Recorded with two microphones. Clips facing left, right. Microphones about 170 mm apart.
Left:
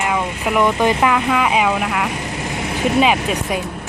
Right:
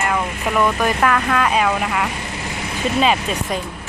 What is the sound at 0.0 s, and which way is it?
Speech, 10° left (ahead or behind).